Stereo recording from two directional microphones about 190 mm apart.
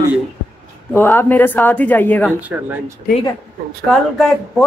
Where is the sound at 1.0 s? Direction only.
10° left (ahead or behind).